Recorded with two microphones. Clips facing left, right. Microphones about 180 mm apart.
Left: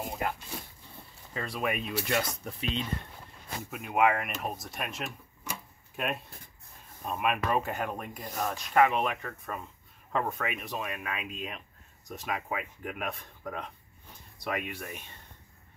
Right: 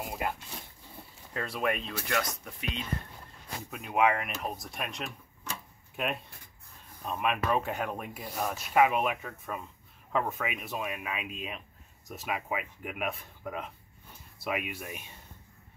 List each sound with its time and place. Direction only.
0.0 s a sound: 5° right (ahead or behind)
1.3 s speech: centre (ahead or behind)
2.1 s speech: 30° left (ahead or behind)
3.7 s speech: centre (ahead or behind)